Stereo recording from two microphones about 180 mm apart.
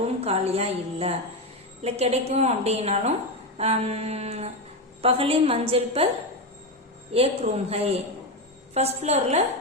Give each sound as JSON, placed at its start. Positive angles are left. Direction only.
{"t": 0.0, "sound": "a woman's voice", "side_deg": -35}
{"t": 7.1, "sound": "a woman's voice", "side_deg": -35}